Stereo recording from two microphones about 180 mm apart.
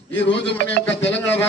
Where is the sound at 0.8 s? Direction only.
80° left.